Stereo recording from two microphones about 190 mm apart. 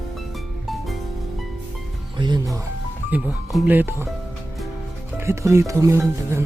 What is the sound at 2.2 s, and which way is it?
Music, 25° right (ahead or behind).